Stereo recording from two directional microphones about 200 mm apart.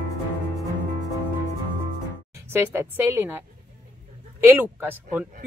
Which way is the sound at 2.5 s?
10° right (ahead or behind).